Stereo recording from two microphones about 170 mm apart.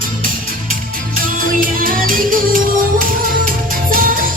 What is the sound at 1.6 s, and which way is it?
Music, 55° right (ahead or behind).